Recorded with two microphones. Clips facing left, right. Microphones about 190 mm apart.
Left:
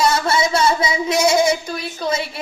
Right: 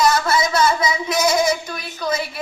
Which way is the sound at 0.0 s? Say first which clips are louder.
Even; 25° left (ahead or behind).